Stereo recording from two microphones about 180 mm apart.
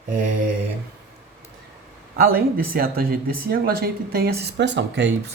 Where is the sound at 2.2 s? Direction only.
55° right (ahead or behind); by 5.1 s 75° right (ahead or behind).